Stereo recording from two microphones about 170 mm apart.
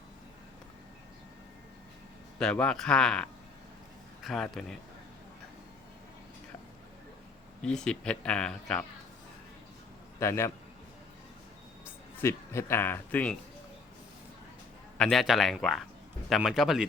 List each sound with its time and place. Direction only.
2.4 s speech: 5° left (ahead or behind)
7.6 s speech: 5° left (ahead or behind)
10.2 s a man's voice: 15° left (ahead or behind)
11.9 s speech: 15° left (ahead or behind)
14.9 s speech: 5° left (ahead or behind)